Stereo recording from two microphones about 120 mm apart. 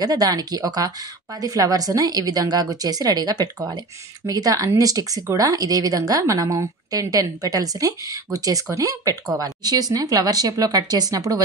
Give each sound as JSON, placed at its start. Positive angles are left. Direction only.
{"t": 0.0, "sound": "a woman's voice", "side_deg": -35}